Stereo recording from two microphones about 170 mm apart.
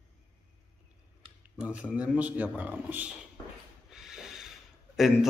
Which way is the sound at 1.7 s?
5° right (ahead or behind).